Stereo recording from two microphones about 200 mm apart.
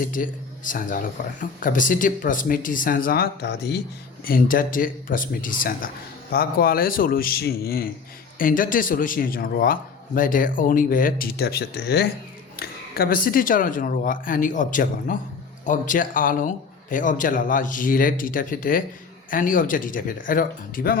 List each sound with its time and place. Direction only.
0.0 s speech: 40° left (ahead or behind)